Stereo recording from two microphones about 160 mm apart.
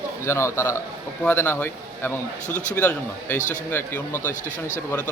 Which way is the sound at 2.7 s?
10° left (ahead or behind).